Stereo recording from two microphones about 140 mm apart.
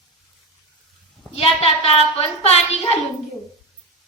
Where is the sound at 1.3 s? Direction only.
45° left (ahead or behind).